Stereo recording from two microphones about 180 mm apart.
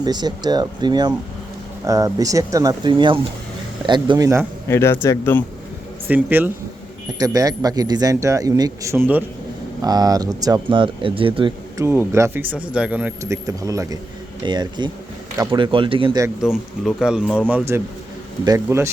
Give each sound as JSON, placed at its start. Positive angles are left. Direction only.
{"t": 0.0, "sound": "speech", "side_deg": -20}
{"t": 4.7, "sound": "speech", "side_deg": 15}
{"t": 6.1, "sound": "speech", "side_deg": -10}
{"t": 7.2, "sound": "speech", "side_deg": -20}
{"t": 9.8, "sound": "speech", "side_deg": -20}
{"t": 11.8, "sound": "speech", "side_deg": -15}
{"t": 16.4, "sound": "speech", "side_deg": -5}